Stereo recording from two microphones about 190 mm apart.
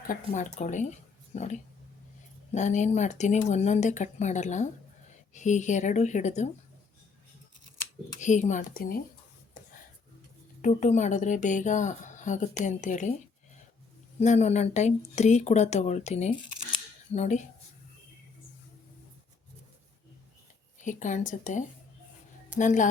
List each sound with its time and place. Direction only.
0.1 s speech: 40° left (ahead or behind)
2.6 s speech: 40° left (ahead or behind)
7.8 s speech: 40° left (ahead or behind)
10.6 s speech: 40° left (ahead or behind)
14.2 s speech: 35° left (ahead or behind)
20.7 s speech: 40° left (ahead or behind)